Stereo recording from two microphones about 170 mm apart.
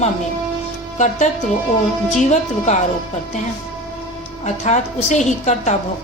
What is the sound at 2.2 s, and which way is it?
Speech, 45° left (ahead or behind).